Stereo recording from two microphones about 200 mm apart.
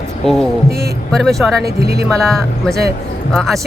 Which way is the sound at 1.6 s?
50° right (ahead or behind).